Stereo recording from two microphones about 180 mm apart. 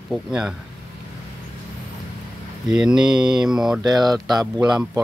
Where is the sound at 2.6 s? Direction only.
5° right (ahead or behind).